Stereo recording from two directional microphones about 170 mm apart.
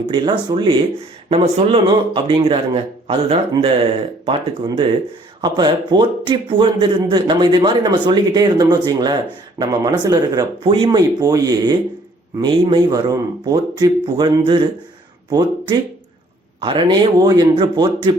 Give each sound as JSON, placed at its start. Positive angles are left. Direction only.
{"t": 0.1, "sound": "a man's voice", "side_deg": -25}